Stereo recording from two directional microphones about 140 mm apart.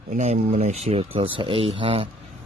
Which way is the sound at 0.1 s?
55° right (ahead or behind).